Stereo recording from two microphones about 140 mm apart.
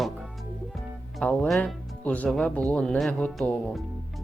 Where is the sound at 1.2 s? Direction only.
5° left (ahead or behind).